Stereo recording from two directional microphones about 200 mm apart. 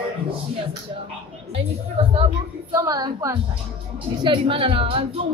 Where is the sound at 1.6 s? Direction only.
30° right (ahead or behind).